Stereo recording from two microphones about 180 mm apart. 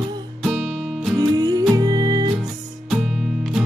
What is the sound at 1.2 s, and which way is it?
Music, 20° right (ahead or behind).